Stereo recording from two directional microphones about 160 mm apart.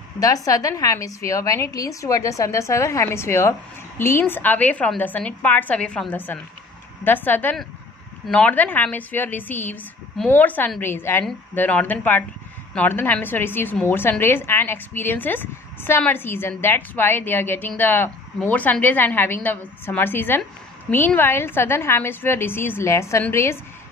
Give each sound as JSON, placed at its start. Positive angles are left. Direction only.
{"t": 0.2, "sound": "a woman's voice", "side_deg": 20}